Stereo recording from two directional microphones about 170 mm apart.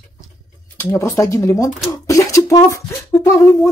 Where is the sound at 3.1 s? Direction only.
15° left (ahead or behind).